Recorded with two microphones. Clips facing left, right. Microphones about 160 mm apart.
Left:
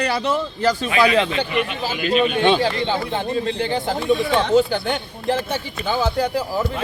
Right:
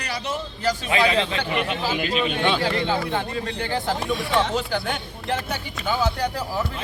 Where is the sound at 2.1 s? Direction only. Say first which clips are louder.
Left 10 dB; 45° left (ahead or behind).